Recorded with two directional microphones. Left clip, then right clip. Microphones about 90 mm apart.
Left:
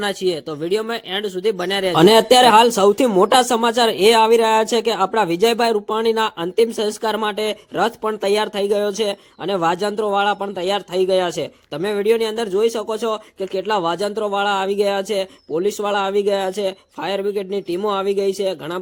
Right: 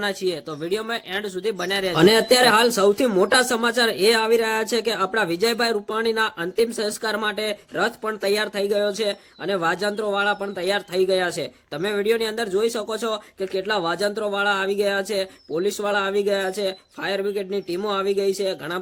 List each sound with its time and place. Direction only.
0.0 s speech: 45° left (ahead or behind); by 18.8 s 30° left (ahead or behind)